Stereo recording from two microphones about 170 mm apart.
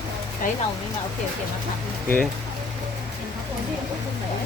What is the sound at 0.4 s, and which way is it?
Speech, 50° left (ahead or behind).